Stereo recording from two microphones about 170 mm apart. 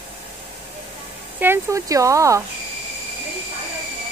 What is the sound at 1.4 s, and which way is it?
Speech, 15° right (ahead or behind).